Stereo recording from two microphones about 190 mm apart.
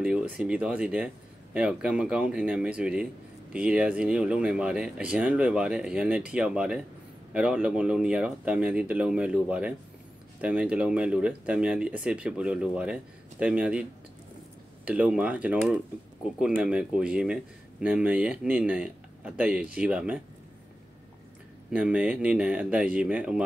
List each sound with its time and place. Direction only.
0.0 s speech: 5° right (ahead or behind)
14.9 s speech: 5° right (ahead or behind)
21.6 s speech: 5° right (ahead or behind)